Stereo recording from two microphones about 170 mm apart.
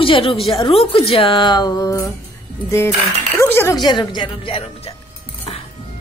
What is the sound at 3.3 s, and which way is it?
Speech, 15° left (ahead or behind).